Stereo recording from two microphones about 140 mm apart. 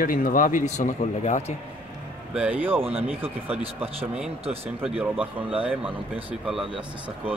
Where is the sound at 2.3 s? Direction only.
5° right (ahead or behind).